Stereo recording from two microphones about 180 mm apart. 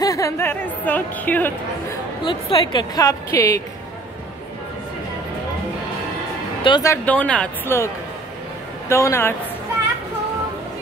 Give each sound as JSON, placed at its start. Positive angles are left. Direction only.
{"t": 0.0, "sound": "a woman's voice", "side_deg": 20}
{"t": 2.2, "sound": "a woman's voice", "side_deg": 25}
{"t": 6.6, "sound": "a woman's voice", "side_deg": 20}